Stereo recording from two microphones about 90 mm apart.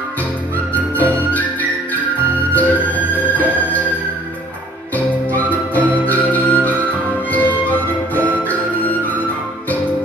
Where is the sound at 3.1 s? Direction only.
20° left (ahead or behind).